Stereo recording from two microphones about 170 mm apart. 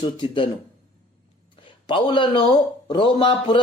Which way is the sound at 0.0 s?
30° left (ahead or behind).